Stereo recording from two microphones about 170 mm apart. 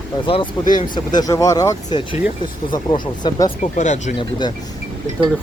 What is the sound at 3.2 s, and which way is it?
Speech, 25° left (ahead or behind).